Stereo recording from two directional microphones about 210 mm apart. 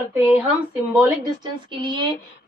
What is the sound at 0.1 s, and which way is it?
Speech, 5° right (ahead or behind).